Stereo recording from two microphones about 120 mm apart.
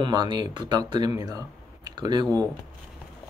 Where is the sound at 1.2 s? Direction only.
35° right (ahead or behind).